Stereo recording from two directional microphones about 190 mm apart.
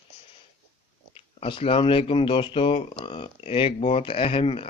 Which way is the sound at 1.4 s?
30° left (ahead or behind).